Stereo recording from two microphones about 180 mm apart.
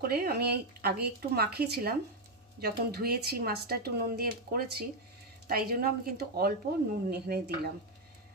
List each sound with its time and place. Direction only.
0.0 s speech: 60° right (ahead or behind)